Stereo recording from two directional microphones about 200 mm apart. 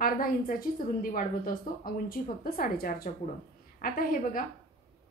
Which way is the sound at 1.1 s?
45° left (ahead or behind).